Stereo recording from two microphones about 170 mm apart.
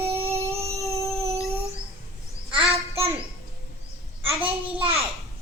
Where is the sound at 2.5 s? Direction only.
30° right (ahead or behind).